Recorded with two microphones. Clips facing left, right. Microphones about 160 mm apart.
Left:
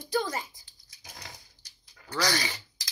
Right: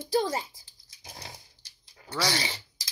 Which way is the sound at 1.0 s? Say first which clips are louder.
Right 2 dB; 30° right (ahead or behind).